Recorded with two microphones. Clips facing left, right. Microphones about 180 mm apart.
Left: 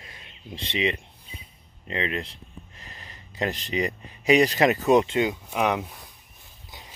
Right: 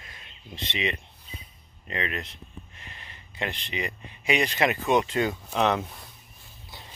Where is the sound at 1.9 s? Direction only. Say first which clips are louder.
Left 3 dB; 30° left (ahead or behind).